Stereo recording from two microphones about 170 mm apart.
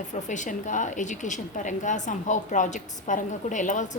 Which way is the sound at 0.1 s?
45° left (ahead or behind).